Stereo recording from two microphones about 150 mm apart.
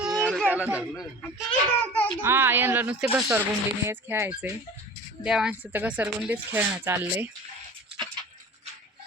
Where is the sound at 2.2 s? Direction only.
15° right (ahead or behind).